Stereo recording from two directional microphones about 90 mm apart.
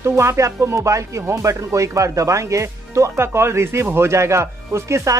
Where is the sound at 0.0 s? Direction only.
30° right (ahead or behind).